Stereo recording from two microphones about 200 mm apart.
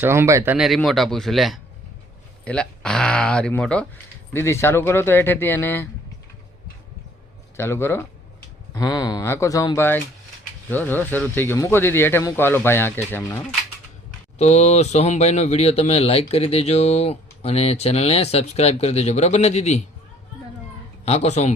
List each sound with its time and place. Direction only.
0.0 s speech: 10° right (ahead or behind); by 5.9 s 10° left (ahead or behind)
7.5 s speech: 10° left (ahead or behind)
14.3 s speech: 35° left (ahead or behind)
21.0 s speech: 35° left (ahead or behind)